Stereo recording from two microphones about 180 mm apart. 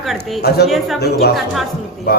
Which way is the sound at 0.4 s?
65° left (ahead or behind).